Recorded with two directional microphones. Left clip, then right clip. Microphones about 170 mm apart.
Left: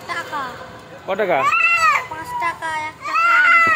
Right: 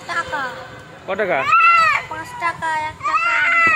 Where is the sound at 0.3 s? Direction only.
5° right (ahead or behind).